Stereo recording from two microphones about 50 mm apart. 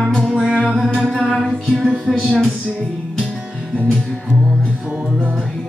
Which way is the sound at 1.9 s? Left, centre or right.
Centre.